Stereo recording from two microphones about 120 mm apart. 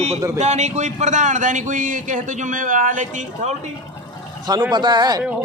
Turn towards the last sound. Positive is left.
turn(degrees=-35)  # may be behind; listen again after turning